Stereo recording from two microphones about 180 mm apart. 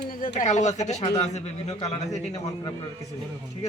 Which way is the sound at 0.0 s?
60° left (ahead or behind).